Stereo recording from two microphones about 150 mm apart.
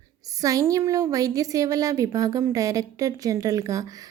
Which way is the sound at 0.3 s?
25° right (ahead or behind).